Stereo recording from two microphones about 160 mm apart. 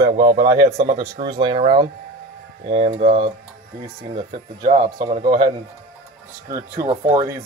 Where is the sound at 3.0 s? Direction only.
50° right (ahead or behind).